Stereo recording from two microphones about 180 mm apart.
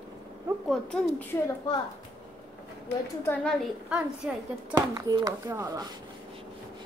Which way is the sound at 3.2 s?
5° left (ahead or behind).